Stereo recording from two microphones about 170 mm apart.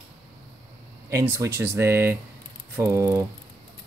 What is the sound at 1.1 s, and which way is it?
Speech, 15° right (ahead or behind).